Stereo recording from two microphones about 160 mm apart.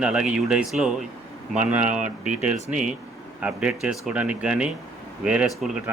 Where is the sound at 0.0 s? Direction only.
5° right (ahead or behind).